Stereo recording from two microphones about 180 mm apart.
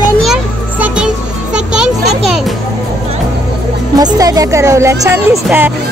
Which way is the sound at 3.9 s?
20° right (ahead or behind).